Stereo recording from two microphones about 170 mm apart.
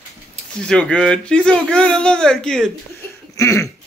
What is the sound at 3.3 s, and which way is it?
Cough, 20° left (ahead or behind).